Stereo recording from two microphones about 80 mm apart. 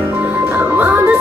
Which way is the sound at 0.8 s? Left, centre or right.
Right.